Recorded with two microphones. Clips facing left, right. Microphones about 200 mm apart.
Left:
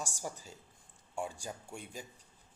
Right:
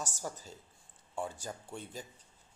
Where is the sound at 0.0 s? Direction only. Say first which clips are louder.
Right 1 dB; 10° left (ahead or behind).